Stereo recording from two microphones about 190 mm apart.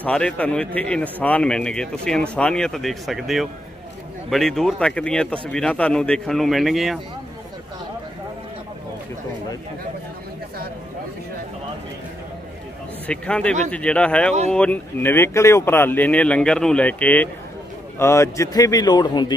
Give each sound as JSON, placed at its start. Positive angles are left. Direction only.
{"t": 0.0, "sound": "a man's voice", "side_deg": 5}
{"t": 13.0, "sound": "a man's voice", "side_deg": 5}